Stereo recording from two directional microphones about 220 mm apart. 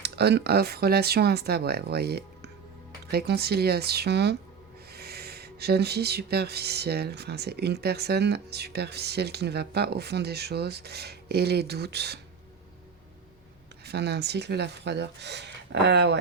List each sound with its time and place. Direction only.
0.0 s speech: 50° right (ahead or behind)
13.8 s speech: 50° right (ahead or behind)